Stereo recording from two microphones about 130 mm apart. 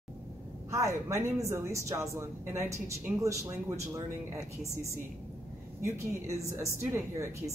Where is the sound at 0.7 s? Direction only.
25° right (ahead or behind).